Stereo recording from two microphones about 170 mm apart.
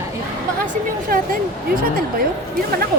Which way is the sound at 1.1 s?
55° right (ahead or behind).